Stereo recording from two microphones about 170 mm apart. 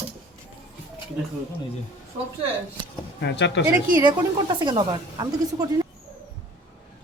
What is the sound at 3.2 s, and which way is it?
Speech, 90° left.